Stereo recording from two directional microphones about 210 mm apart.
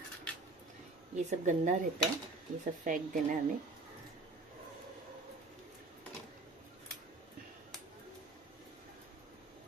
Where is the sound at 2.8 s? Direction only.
40° right (ahead or behind).